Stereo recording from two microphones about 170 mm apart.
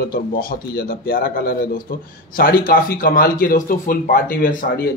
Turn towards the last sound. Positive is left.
turn(degrees=55)  # may be behind; listen again after turning